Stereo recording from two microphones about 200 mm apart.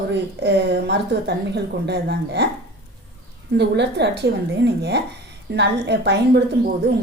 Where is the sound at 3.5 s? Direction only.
60° right (ahead or behind).